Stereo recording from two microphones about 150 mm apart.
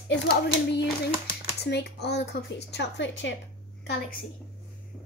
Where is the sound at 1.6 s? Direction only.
90° left.